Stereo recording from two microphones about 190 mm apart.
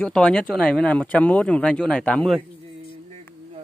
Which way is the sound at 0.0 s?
5° left (ahead or behind).